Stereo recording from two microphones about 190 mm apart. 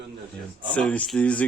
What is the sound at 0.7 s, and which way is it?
Speech, 5° left (ahead or behind).